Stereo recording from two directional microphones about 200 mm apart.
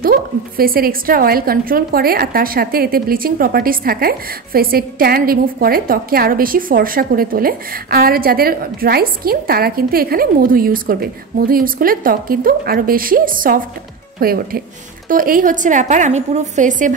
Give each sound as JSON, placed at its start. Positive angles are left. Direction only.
{"t": 0.0, "sound": "a woman's voice", "side_deg": -45}